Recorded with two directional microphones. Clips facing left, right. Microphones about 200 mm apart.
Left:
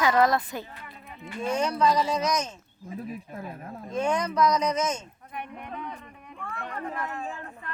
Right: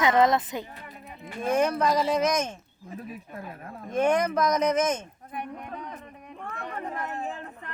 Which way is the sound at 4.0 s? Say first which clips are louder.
Right 2 dB; 55° right (ahead or behind).